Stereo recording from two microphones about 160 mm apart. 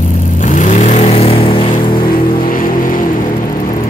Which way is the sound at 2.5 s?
60° left (ahead or behind).